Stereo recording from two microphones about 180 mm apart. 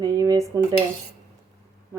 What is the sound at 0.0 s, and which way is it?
Dishes, 20° right (ahead or behind).